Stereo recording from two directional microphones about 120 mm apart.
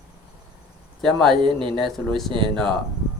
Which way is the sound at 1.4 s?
45° right (ahead or behind).